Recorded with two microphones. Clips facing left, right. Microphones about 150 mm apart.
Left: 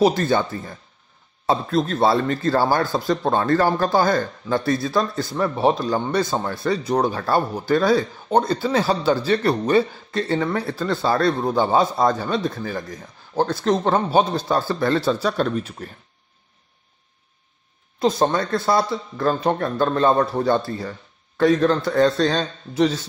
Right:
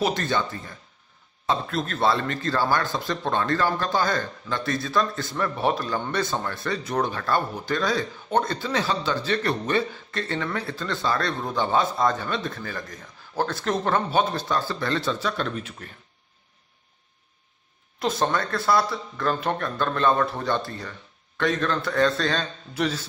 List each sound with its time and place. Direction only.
0.0 s speech: 40° left (ahead or behind)
18.2 s speech: 25° left (ahead or behind)